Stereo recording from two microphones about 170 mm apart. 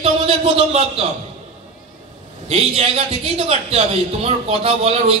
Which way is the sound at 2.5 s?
35° right (ahead or behind).